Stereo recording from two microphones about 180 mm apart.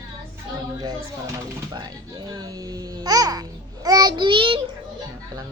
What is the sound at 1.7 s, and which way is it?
Babbling, 20° right (ahead or behind).